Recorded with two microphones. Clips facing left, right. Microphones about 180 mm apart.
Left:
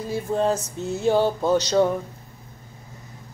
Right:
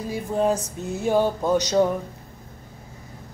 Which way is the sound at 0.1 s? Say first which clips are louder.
Even; 15° right (ahead or behind).